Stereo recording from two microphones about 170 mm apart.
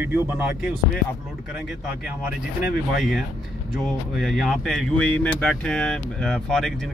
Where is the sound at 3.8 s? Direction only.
Centre (ahead or behind).